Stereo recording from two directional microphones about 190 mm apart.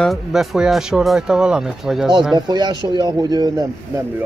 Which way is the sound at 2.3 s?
20° right (ahead or behind).